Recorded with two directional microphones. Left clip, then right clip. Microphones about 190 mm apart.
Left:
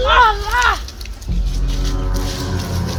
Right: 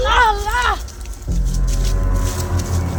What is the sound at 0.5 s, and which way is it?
Speech, 15° right (ahead or behind).